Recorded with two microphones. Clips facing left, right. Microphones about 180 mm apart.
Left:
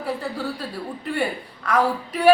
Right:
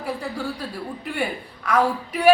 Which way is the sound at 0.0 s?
Centre (ahead or behind).